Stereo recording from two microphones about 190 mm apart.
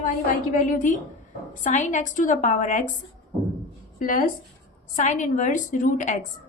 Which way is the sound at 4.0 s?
45° left (ahead or behind).